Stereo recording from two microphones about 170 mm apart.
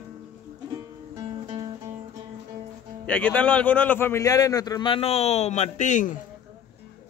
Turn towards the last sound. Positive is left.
turn(degrees=45)  # may be behind; listen again after turning